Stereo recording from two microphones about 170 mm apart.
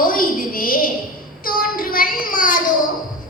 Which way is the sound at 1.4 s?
60° left (ahead or behind).